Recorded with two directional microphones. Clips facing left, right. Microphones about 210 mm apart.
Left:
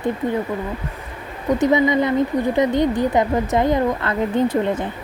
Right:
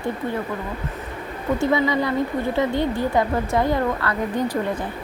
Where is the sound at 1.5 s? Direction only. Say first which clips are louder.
Left 4 dB; 20° left (ahead or behind).